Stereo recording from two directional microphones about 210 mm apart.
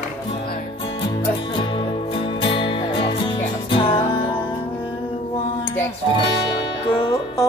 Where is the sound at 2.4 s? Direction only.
25° left (ahead or behind).